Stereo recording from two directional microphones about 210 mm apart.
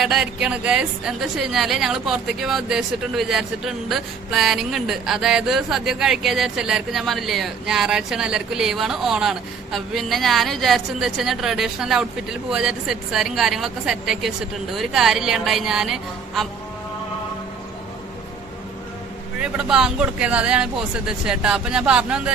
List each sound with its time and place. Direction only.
0.0 s a woman's voice: centre (ahead or behind)
19.4 s a woman's voice: 5° right (ahead or behind)